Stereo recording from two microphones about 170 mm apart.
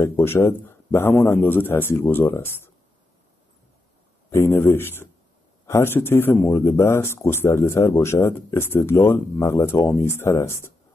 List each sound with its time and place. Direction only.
0.0 s speech: 15° left (ahead or behind)
4.3 s speech: 15° left (ahead or behind)